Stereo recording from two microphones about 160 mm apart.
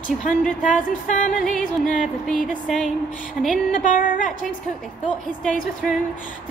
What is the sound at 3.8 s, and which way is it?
Speech, 55° left (ahead or behind).